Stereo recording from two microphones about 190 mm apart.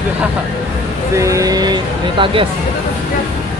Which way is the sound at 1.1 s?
15° right (ahead or behind).